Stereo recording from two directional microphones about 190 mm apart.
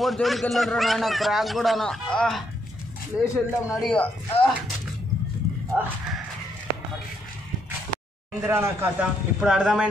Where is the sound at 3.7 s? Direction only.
5° left (ahead or behind).